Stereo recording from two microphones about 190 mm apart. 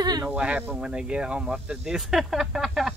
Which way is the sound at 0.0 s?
20° right (ahead or behind).